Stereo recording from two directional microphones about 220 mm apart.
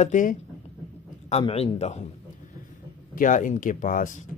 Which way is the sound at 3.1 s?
35° left (ahead or behind).